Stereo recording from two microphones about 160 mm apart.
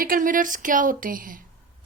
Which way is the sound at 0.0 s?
60° right (ahead or behind).